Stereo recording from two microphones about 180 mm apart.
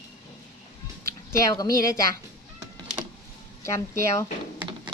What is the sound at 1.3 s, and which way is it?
Speech, 20° left (ahead or behind).